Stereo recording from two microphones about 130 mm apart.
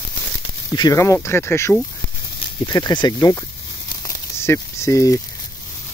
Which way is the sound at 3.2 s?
25° left (ahead or behind).